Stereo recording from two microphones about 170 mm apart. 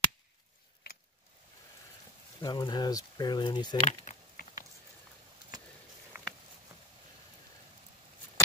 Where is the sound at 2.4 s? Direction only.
25° left (ahead or behind).